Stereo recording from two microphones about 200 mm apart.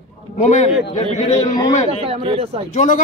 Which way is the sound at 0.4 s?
35° left (ahead or behind).